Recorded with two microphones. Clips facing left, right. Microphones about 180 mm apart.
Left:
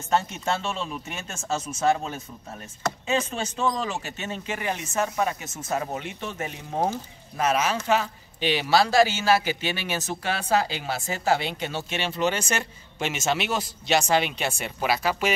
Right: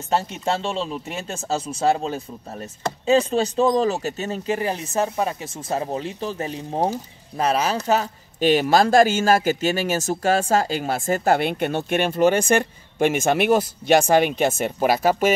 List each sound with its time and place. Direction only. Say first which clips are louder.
0.1 s speech: right 2 dB; 35° right (ahead or behind)